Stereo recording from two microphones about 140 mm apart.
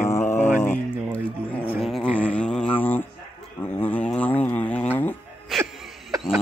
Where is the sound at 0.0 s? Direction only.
20° left (ahead or behind).